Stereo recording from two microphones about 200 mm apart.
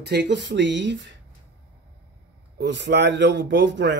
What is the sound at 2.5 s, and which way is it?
Speech, 60° right (ahead or behind).